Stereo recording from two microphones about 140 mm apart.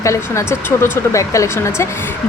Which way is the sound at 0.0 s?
20° left (ahead or behind).